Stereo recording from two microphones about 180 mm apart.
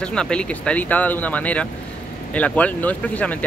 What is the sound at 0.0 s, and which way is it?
Speech, 5° left (ahead or behind).